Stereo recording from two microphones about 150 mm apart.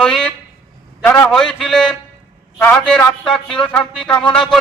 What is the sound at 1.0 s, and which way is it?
A man's voice, 10° left (ahead or behind).